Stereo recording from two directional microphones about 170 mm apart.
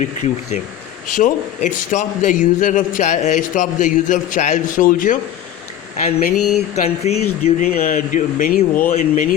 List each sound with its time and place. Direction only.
0.0 s a man's voice: 45° left (ahead or behind)
6.1 s speech: 40° left (ahead or behind)
7.8 s a man's voice: 50° left (ahead or behind)